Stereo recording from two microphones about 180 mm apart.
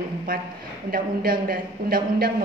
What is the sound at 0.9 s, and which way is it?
Speech, 55° right (ahead or behind).